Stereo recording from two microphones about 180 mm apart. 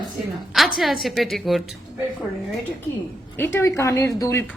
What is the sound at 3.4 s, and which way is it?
A woman's voice, 15° left (ahead or behind).